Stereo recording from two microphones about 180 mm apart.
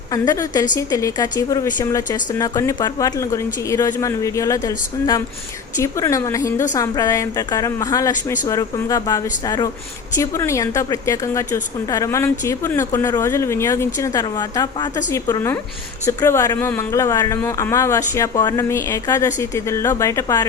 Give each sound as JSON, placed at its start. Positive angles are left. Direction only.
{"t": 0.1, "sound": "a woman's voice", "side_deg": 20}